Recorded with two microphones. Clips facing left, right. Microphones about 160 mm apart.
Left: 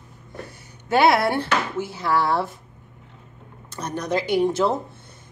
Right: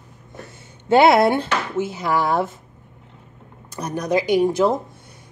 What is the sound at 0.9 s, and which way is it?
Speech, 20° right (ahead or behind).